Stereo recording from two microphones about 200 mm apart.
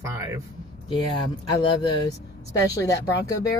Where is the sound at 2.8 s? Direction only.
15° left (ahead or behind).